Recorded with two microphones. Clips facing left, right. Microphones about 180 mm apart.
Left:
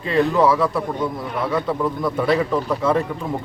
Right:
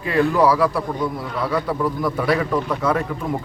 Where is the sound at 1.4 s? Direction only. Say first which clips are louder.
Even; 25° left (ahead or behind).